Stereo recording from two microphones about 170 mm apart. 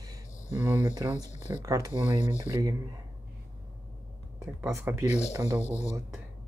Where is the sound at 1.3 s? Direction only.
45° left (ahead or behind).